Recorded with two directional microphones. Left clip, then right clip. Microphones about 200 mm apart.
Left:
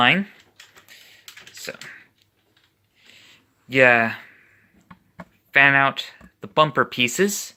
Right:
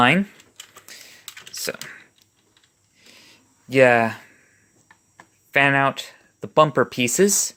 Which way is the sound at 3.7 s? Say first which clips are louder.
Even; 20° right (ahead or behind).